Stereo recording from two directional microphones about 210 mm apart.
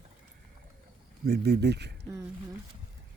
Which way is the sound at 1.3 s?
50° right (ahead or behind).